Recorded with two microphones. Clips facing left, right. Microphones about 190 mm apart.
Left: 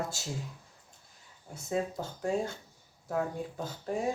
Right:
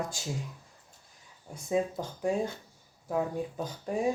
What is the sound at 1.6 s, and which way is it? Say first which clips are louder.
Speech: right 3 dB; 15° right (ahead or behind).